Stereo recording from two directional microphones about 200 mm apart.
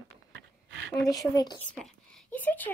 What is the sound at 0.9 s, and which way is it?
Speech, 20° left (ahead or behind).